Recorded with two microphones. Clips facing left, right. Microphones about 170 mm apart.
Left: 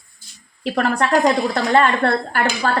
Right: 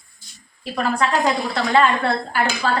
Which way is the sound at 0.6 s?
60° left (ahead or behind).